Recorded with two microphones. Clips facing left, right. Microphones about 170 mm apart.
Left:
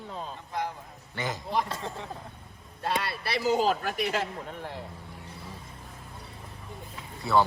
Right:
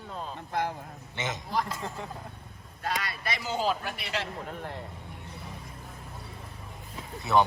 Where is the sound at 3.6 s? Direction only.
45° left (ahead or behind).